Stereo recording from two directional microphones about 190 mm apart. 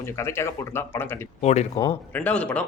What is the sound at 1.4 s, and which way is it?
Speech, 35° left (ahead or behind).